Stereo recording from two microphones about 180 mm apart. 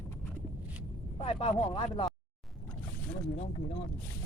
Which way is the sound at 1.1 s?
30° left (ahead or behind).